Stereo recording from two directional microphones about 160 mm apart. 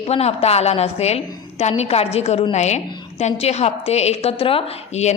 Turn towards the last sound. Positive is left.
turn(degrees=40)  # may be behind; listen again after turning